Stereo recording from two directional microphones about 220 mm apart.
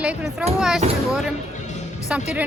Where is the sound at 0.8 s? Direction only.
30° right (ahead or behind).